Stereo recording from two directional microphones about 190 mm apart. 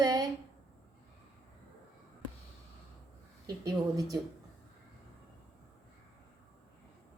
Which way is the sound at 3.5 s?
20° right (ahead or behind).